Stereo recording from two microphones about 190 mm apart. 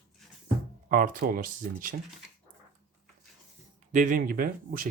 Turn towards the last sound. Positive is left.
turn(degrees=-50)  # may be behind; listen again after turning